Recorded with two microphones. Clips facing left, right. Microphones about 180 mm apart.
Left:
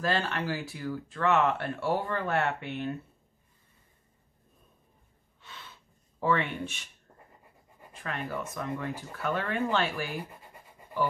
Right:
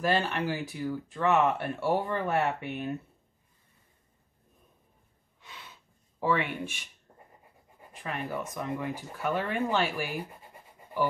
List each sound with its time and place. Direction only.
0.0 s speech: 15° right (ahead or behind)
5.4 s gasp: 15° right (ahead or behind)
7.1 s a sound: 10° right (ahead or behind)
7.9 s speech: 10° right (ahead or behind)